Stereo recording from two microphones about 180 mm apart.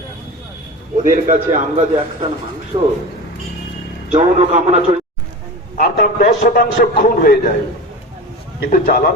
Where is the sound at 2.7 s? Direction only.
30° right (ahead or behind).